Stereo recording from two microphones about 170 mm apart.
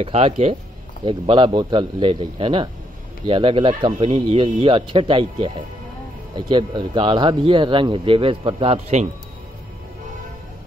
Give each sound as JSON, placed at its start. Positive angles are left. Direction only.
{"t": 0.0, "sound": "a man's voice", "side_deg": -40}